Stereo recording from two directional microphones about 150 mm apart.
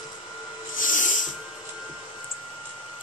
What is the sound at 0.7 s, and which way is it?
Snort, 60° left (ahead or behind).